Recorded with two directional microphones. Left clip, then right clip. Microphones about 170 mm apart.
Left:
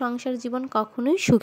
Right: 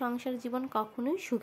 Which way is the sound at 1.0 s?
50° left (ahead or behind).